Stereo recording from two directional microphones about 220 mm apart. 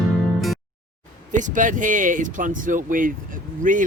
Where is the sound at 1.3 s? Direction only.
35° right (ahead or behind).